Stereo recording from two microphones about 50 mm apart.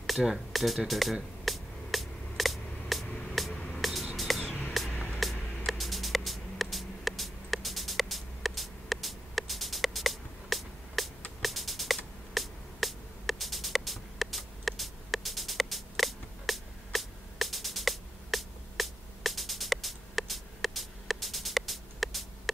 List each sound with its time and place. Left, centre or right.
0.0 s speech: centre
1.4 s music: centre
3.1 s music: left
3.8 s a sound: centre
4.7 s music: centre